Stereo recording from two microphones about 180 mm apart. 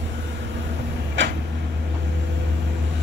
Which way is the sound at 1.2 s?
80° right.